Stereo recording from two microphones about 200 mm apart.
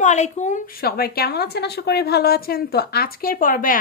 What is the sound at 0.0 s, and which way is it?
A woman's voice, 35° left (ahead or behind).